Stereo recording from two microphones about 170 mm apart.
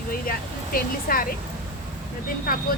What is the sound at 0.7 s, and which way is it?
Speech, 60° left (ahead or behind).